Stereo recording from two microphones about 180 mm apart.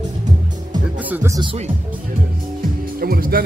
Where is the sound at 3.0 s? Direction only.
55° right (ahead or behind).